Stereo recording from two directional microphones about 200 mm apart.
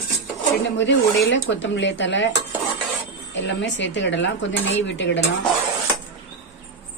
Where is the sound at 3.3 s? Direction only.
65° left (ahead or behind).